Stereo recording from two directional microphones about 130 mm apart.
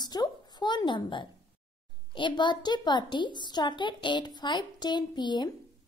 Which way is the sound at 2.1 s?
35° left (ahead or behind).